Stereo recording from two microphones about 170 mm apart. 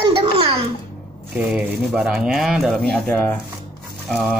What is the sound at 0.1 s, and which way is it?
Babbling, 30° right (ahead or behind).